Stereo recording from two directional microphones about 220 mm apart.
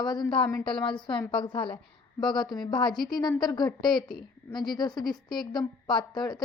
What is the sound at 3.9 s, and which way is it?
Speech, centre (ahead or behind).